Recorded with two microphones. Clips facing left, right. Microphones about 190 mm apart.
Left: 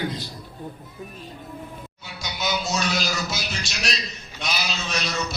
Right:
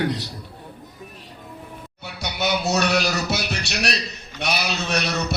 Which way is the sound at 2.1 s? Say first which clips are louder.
Right 4 dB; 65° right (ahead or behind).